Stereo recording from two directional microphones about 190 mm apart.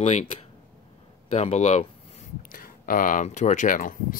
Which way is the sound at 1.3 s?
35° left (ahead or behind).